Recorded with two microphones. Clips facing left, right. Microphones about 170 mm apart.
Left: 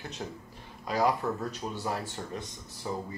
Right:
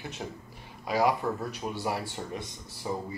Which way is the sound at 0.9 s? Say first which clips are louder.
Right 1 dB; 10° right (ahead or behind).